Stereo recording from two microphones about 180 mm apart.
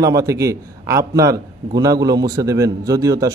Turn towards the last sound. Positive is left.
turn(degrees=-20)  # may be behind; listen again after turning